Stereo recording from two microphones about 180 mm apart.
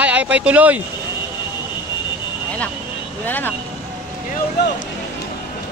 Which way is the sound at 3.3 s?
10° left (ahead or behind).